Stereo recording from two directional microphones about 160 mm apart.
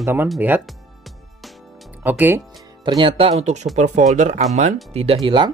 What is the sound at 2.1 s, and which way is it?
Speech, 10° right (ahead or behind).